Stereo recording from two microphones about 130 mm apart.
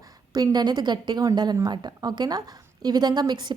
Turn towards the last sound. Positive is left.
turn(degrees=-35)  # may be behind; listen again after turning